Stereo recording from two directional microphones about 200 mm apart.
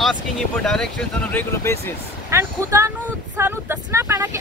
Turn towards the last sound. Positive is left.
turn(degrees=-15)  # may be behind; listen again after turning